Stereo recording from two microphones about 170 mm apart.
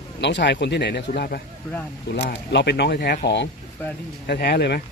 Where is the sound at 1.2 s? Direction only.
65° left (ahead or behind).